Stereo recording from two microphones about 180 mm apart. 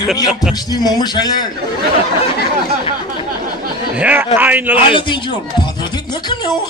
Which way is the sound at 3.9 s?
10° right (ahead or behind).